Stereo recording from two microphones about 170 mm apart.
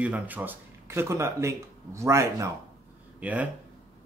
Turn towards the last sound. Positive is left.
turn(degrees=-10)  # may be behind; listen again after turning